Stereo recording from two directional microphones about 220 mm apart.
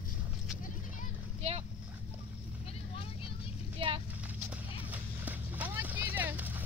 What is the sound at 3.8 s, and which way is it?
Vehicle, 25° right (ahead or behind).